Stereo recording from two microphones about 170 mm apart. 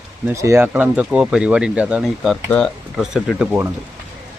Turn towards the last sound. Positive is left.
turn(degrees=-5)  # may be behind; listen again after turning